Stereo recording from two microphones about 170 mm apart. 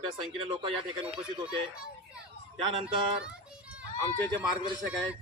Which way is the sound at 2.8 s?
5° right (ahead or behind).